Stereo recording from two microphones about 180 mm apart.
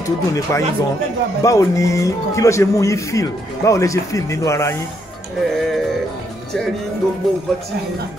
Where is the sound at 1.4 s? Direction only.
15° left (ahead or behind).